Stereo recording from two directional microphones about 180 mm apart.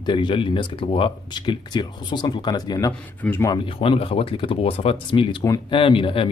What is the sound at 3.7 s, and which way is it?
Speech, 30° left (ahead or behind).